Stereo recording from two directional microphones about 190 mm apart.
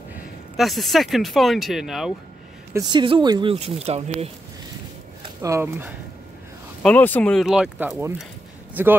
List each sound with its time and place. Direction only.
0.6 s speech: centre (ahead or behind)
2.9 s speech: 25° right (ahead or behind)
5.2 s speech: 15° right (ahead or behind)
6.8 s a man's voice: 5° left (ahead or behind); by 8.9 s 10° right (ahead or behind)